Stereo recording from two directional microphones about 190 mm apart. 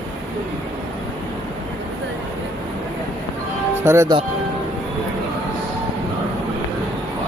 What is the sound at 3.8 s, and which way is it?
Speech, 15° right (ahead or behind).